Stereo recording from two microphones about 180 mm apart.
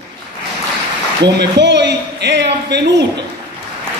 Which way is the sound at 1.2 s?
70° right (ahead or behind).